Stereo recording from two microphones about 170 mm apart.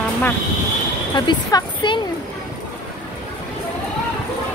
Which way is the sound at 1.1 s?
25° left (ahead or behind).